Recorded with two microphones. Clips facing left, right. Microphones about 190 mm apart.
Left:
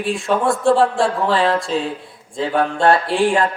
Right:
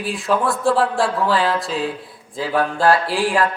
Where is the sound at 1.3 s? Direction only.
30° left (ahead or behind).